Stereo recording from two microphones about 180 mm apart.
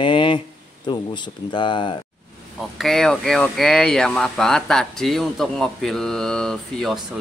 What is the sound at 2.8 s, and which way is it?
Speech, centre (ahead or behind).